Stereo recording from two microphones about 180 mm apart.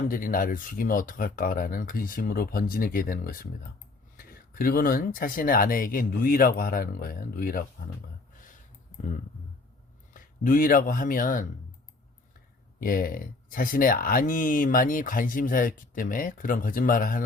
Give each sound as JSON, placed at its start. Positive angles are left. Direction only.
{"t": 0.1, "sound": "speech", "side_deg": 50}
{"t": 10.2, "sound": "speech", "side_deg": 50}
{"t": 12.8, "sound": "speech", "side_deg": 50}